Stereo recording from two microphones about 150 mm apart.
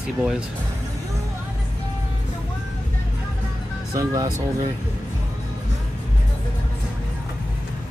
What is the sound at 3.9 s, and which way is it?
Speech, 25° right (ahead or behind).